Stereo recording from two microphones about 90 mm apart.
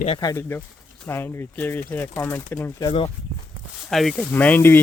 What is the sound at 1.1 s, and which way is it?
Speech, 25° left (ahead or behind).